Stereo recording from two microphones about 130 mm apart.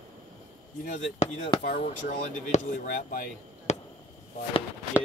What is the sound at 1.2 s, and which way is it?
Speech, 60° left (ahead or behind).